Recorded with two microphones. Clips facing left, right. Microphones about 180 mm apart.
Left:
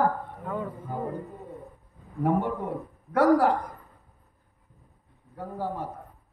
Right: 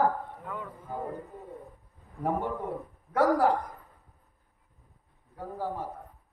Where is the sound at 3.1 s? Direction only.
70° left (ahead or behind).